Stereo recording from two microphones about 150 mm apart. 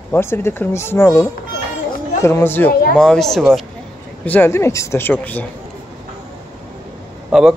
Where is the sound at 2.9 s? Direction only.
5° left (ahead or behind).